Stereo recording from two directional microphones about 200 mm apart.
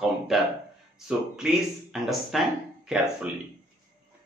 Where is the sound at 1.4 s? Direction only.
Centre (ahead or behind).